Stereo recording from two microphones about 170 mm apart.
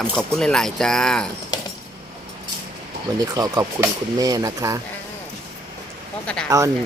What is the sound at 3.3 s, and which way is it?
Speech, 25° right (ahead or behind).